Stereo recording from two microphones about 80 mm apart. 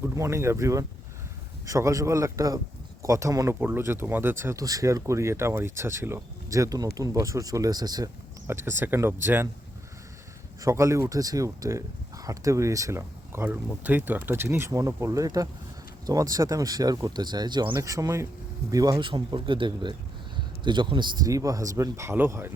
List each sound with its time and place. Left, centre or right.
0.0 s speech: right
3.5 s speech: right
4.5 s speech: right
8.4 s speech: right
10.6 s speech: right
14.7 s speech: right
17.7 s speech: right
18.9 s a man's voice: right
21.2 s speech: right